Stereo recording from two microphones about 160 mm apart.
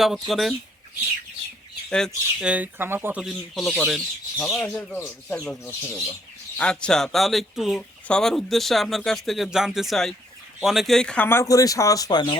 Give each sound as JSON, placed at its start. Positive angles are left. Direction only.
{"t": 0.0, "sound": "speech", "side_deg": 0}
{"t": 1.9, "sound": "speech", "side_deg": 5}
{"t": 3.2, "sound": "speech", "side_deg": 0}